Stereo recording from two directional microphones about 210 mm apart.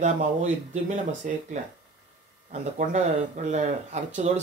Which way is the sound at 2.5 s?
35° right (ahead or behind).